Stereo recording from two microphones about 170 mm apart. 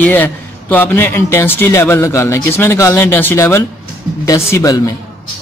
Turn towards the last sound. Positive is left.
turn(degrees=20)  # may be behind; listen again after turning